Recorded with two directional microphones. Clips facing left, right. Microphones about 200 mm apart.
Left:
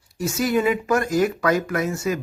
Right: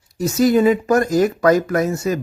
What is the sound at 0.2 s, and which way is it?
Speech, 40° right (ahead or behind).